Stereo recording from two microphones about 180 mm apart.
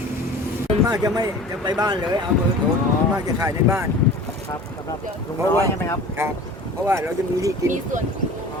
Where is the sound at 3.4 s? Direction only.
15° right (ahead or behind).